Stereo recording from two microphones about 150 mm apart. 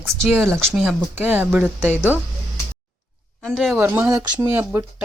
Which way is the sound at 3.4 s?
Centre (ahead or behind).